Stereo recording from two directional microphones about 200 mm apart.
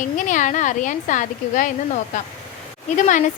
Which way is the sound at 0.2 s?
40° left (ahead or behind).